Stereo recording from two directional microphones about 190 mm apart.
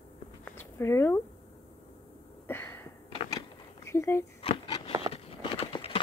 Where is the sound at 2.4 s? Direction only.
10° left (ahead or behind).